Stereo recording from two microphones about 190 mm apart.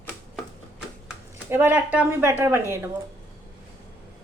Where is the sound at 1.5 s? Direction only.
10° right (ahead or behind).